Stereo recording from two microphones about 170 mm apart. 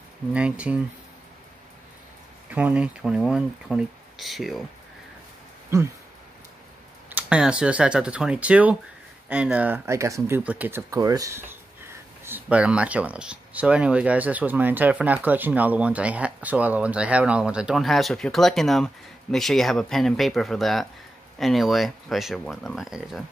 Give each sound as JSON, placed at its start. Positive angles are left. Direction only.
{"t": 0.3, "sound": "speech", "side_deg": -5}
{"t": 2.5, "sound": "speech", "side_deg": -10}
{"t": 5.7, "sound": "speech", "side_deg": -15}
{"t": 7.1, "sound": "speech", "side_deg": -10}